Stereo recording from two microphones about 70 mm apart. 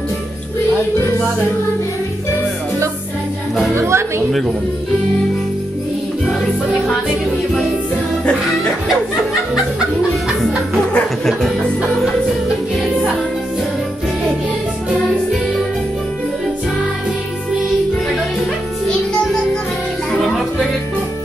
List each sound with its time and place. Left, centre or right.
3.7 s speech: right
4.3 s speech: centre
6.2 s music: centre
12.7 s music: centre
20.1 s music: centre